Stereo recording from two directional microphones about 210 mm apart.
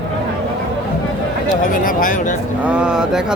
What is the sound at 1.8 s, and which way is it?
Speech, 40° left (ahead or behind).